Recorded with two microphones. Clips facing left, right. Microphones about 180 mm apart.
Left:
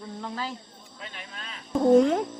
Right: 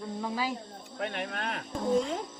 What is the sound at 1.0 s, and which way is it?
Speech, 65° right (ahead or behind).